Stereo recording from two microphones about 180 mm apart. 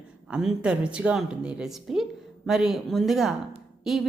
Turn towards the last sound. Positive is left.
turn(degrees=0)  # may be behind; listen again after turning